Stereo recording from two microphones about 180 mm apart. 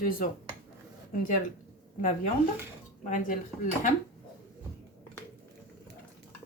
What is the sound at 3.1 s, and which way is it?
Speech, 45° left (ahead or behind).